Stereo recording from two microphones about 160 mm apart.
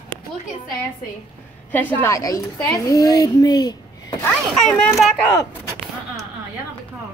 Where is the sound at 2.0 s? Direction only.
20° left (ahead or behind).